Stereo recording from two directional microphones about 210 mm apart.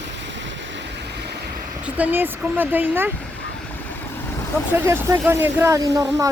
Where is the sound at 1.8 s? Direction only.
5° right (ahead or behind).